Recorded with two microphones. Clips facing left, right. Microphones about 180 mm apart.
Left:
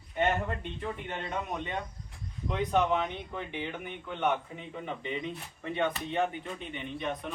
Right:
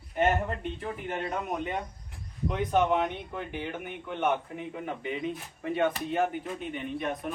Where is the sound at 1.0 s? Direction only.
5° right (ahead or behind).